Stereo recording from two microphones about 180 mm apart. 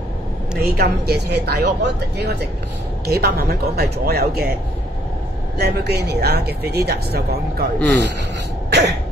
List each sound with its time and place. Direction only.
0.6 s a woman's voice: 60° right (ahead or behind)
5.6 s a woman's voice: 65° right (ahead or behind)
8.6 s cough: 70° right (ahead or behind)